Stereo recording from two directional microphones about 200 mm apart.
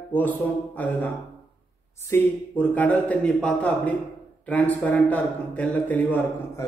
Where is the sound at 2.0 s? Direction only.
10° left (ahead or behind).